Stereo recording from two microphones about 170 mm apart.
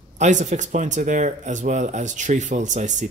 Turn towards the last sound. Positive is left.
turn(degrees=-45)  # may be behind; listen again after turning